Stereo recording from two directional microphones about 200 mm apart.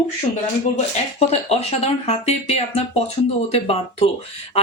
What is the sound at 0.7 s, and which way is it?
A woman's voice, 30° left (ahead or behind).